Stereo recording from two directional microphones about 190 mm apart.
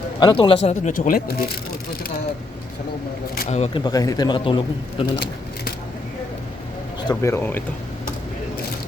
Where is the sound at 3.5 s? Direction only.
35° left (ahead or behind).